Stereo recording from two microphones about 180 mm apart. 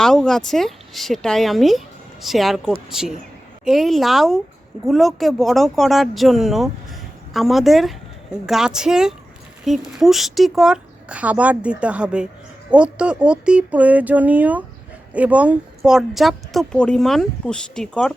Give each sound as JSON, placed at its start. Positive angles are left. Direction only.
{"t": 0.0, "sound": "a woman's voice", "side_deg": 0}